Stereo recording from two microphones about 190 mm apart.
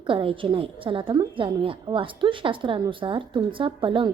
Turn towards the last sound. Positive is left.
turn(degrees=-25)  # may be behind; listen again after turning